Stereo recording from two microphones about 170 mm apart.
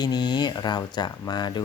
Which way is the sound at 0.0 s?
25° left (ahead or behind).